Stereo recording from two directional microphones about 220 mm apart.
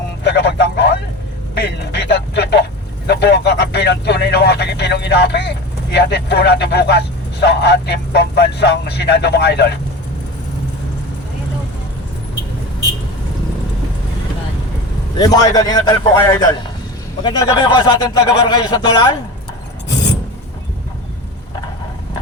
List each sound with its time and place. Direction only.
0.3 s a sound: 50° left (ahead or behind)
1.5 s speech: 50° left (ahead or behind)
15.2 s a man's voice: 15° left (ahead or behind)